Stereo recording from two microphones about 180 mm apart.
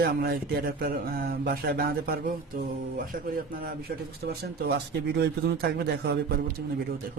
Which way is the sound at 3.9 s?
55° right (ahead or behind).